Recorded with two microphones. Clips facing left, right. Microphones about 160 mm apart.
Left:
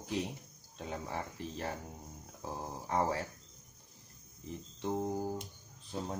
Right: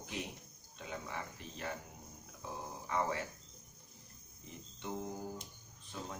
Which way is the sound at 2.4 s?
35° left (ahead or behind).